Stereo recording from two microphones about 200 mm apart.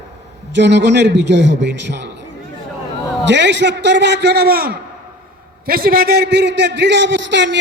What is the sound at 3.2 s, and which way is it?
A man's voice, 60° right (ahead or behind).